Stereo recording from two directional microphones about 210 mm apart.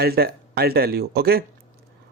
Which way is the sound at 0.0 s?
50° right (ahead or behind).